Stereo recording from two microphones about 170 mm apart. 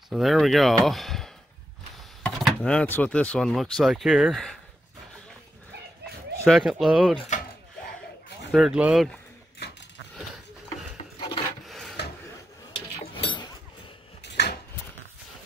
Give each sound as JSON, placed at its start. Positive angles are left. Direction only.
{"t": 0.1, "sound": "speech", "side_deg": 0}
{"t": 6.4, "sound": "speech", "side_deg": 0}
{"t": 8.5, "sound": "speech", "side_deg": 0}
{"t": 11.1, "sound": "filing", "side_deg": 30}
{"t": 11.6, "sound": "filing", "side_deg": 0}
{"t": 13.1, "sound": "a sound", "side_deg": 30}